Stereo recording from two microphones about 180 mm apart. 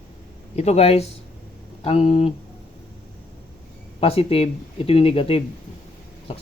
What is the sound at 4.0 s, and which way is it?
Speech, 30° left (ahead or behind).